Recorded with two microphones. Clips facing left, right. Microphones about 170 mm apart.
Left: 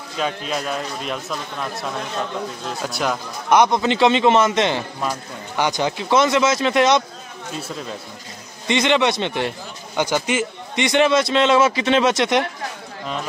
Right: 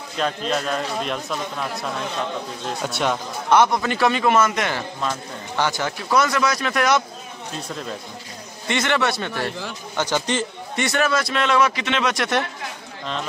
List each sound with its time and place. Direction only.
0.2 s a man's voice: 5° left (ahead or behind)
3.4 s a man's voice: 15° left (ahead or behind)
7.5 s a man's voice: 5° left (ahead or behind)
8.6 s a man's voice: 20° left (ahead or behind)